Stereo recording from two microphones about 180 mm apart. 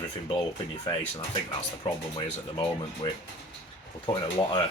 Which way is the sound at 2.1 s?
30° left (ahead or behind).